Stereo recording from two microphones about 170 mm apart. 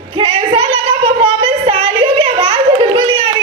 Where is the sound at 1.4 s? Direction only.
30° right (ahead or behind).